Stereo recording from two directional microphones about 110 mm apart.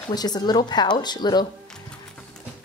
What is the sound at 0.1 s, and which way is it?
Speech, 40° left (ahead or behind).